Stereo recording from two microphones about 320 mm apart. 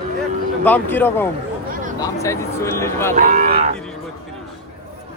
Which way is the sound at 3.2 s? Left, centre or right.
Right.